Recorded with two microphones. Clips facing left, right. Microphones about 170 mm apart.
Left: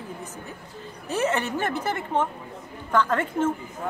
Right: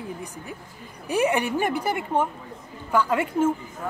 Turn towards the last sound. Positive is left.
turn(degrees=-10)  # may be behind; listen again after turning